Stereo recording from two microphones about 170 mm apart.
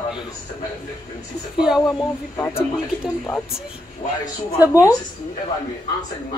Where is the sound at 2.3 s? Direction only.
15° left (ahead or behind).